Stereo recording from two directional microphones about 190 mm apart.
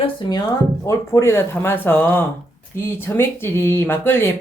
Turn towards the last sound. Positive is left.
turn(degrees=10)  # may be behind; listen again after turning